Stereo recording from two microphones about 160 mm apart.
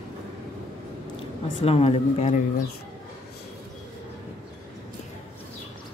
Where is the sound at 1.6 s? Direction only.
40° left (ahead or behind).